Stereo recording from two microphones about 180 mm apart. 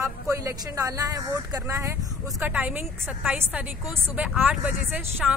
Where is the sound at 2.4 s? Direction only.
10° right (ahead or behind).